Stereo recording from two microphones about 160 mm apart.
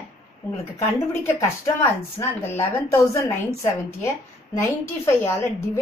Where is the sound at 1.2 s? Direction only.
15° left (ahead or behind).